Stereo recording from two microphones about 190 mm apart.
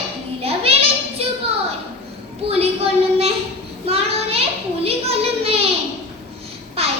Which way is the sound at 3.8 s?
30° right (ahead or behind).